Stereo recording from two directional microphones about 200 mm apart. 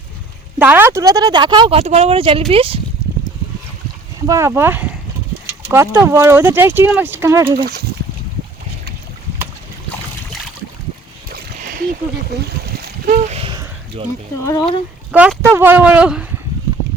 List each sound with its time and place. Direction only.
0.6 s speech: 10° right (ahead or behind)
1.8 s speech: 35° right (ahead or behind)
4.3 s speech: 15° right (ahead or behind)
7.5 s speech: 50° right (ahead or behind)
11.3 s a sound: 45° right (ahead or behind)
12.6 s boat: 40° right (ahead or behind)
13.5 s a sound: 25° right (ahead or behind)
14.4 s speech: 20° left (ahead or behind)
15.1 s speech: 10° right (ahead or behind)